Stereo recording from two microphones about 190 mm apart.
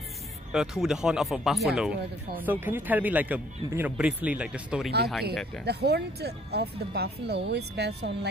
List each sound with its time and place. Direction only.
0.5 s speech: 5° right (ahead or behind)
5.7 s speech: 60° right (ahead or behind)